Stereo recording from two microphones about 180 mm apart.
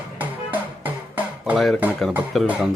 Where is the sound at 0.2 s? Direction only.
10° right (ahead or behind).